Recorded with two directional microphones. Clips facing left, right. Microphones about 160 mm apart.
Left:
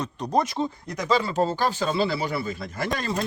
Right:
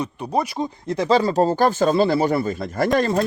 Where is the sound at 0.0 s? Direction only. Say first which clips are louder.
Right 1 dB; 10° right (ahead or behind).